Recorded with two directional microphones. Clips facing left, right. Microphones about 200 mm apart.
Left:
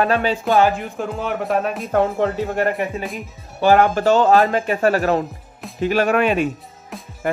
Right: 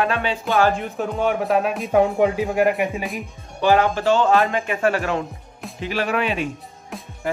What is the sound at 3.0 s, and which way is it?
Speech, centre (ahead or behind).